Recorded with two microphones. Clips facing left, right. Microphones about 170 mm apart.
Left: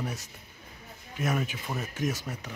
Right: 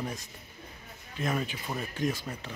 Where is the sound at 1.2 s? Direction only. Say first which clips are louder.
Left 1 dB; 10° left (ahead or behind).